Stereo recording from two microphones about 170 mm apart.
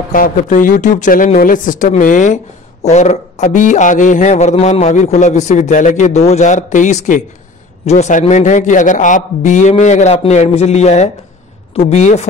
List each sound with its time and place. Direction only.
0.1 s a man's voice: 55° left (ahead or behind)